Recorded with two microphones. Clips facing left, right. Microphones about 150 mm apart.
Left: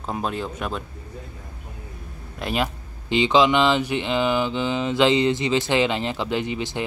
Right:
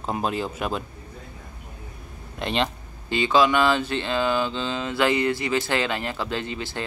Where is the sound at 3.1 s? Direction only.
20° left (ahead or behind).